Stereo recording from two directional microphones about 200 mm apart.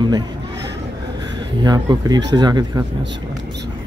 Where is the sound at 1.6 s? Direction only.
20° right (ahead or behind).